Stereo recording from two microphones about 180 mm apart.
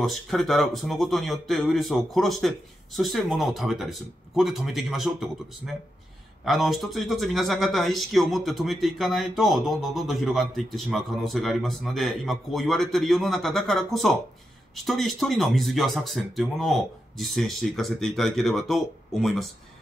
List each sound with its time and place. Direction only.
0.0 s speech: centre (ahead or behind)